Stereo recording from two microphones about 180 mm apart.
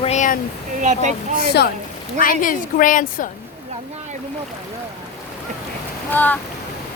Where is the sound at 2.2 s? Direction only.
50° left (ahead or behind).